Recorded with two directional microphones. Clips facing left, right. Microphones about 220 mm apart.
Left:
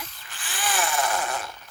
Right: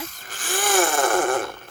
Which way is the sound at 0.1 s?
45° right (ahead or behind).